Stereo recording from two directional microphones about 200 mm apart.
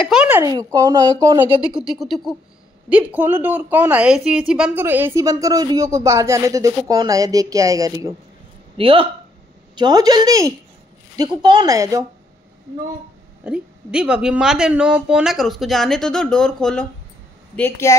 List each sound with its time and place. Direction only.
0.1 s a woman's voice: 5° right (ahead or behind)
0.5 s a woman's voice: 20° right (ahead or behind)
1.6 s a woman's voice: 5° right (ahead or behind)
8.7 s a woman's voice: 25° right (ahead or behind)
13.4 s a woman's voice: 5° right (ahead or behind); by 17.9 s 10° left (ahead or behind)